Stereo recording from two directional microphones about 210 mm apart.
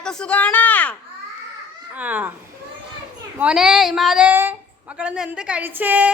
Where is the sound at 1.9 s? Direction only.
5° right (ahead or behind).